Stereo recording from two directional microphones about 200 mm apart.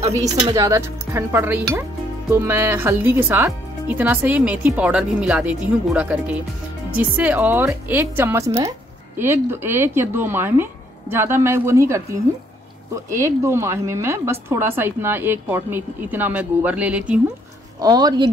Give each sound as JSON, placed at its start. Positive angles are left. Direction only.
{"t": 0.4, "sound": "speech", "side_deg": -20}
{"t": 17.7, "sound": "speech", "side_deg": -20}